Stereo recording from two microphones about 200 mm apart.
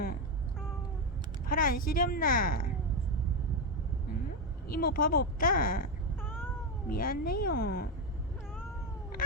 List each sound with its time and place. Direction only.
1.5 s a woman's voice: 45° left (ahead or behind)
4.7 s a woman's voice: 45° left (ahead or behind)
6.2 s cat: 10° left (ahead or behind)
6.8 s a woman's voice: 45° left (ahead or behind)